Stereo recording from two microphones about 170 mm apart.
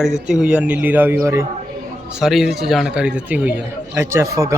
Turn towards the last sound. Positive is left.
turn(degrees=-20)  # may be behind; listen again after turning